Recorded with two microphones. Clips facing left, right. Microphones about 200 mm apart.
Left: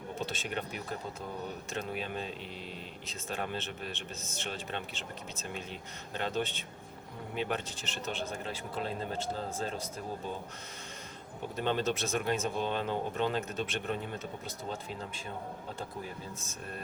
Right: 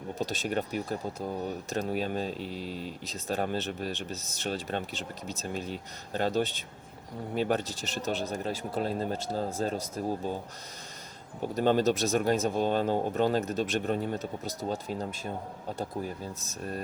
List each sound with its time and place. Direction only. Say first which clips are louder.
0.2 s speech: right 7 dB; 40° right (ahead or behind)
11.5 s speech: right 7 dB; 40° right (ahead or behind)
16.4 s speech: right 7 dB; 40° right (ahead or behind)